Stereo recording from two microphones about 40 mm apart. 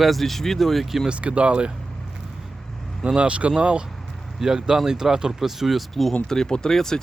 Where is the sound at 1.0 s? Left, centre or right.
Right.